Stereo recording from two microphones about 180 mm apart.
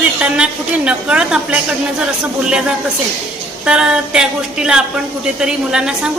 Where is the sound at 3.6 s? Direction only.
5° right (ahead or behind).